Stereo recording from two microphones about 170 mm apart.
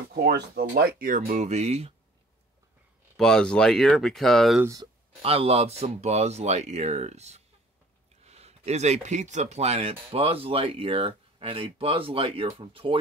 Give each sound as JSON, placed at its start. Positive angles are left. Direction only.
{"t": 0.1, "sound": "speech", "side_deg": -65}
{"t": 3.2, "sound": "speech", "side_deg": 5}
{"t": 5.2, "sound": "speech", "side_deg": -35}